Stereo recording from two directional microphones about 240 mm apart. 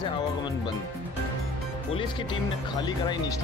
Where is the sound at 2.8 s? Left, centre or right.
Centre.